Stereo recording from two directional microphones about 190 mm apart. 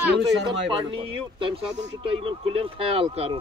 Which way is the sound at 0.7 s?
25° right (ahead or behind).